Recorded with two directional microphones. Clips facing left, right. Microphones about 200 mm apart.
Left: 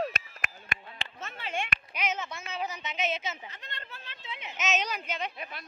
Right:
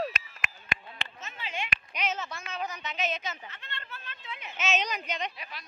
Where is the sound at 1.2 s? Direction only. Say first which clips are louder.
Left 4 dB; 50° left (ahead or behind).